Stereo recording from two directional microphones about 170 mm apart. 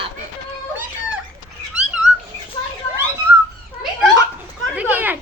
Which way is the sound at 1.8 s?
5° right (ahead or behind).